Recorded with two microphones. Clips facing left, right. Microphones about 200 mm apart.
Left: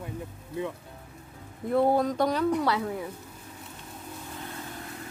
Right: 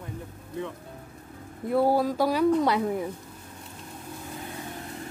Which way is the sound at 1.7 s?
5° right (ahead or behind).